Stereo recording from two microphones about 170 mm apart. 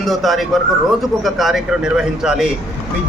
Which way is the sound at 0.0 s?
Centre (ahead or behind).